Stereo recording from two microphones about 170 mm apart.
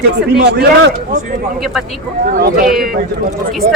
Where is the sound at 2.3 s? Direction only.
55° right (ahead or behind).